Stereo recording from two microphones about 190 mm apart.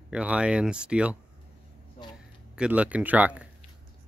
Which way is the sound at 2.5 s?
5° right (ahead or behind).